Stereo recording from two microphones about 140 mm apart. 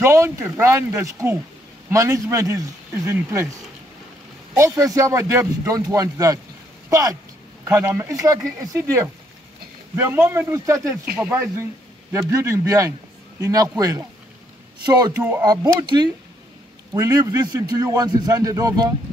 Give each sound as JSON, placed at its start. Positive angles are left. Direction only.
{"t": 0.0, "sound": "a man's voice", "side_deg": -20}
{"t": 4.6, "sound": "a man's voice", "side_deg": -20}
{"t": 15.1, "sound": "a man's voice", "side_deg": -15}
{"t": 15.4, "sound": "a man's voice", "side_deg": -30}